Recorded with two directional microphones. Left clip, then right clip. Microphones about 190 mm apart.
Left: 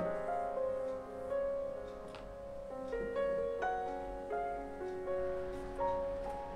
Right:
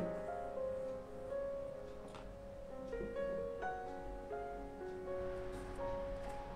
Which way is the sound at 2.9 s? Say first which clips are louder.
Left 6 dB; 25° left (ahead or behind).